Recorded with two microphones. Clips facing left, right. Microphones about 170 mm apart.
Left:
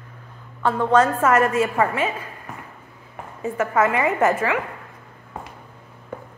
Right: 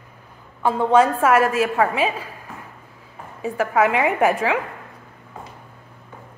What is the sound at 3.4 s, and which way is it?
A woman's voice, 15° right (ahead or behind).